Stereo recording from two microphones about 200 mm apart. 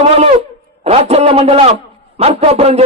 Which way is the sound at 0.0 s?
30° right (ahead or behind).